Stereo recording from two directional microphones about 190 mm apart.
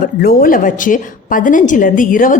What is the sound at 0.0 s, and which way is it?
A woman's voice, 50° left (ahead or behind).